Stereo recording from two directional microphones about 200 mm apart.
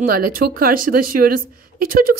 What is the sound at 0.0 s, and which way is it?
A woman's voice, 45° right (ahead or behind).